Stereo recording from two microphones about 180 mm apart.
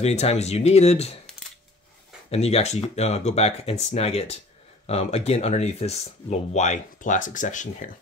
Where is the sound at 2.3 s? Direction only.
35° left (ahead or behind).